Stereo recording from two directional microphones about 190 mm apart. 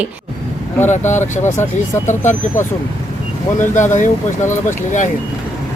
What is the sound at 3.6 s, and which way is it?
Speech, 40° left (ahead or behind).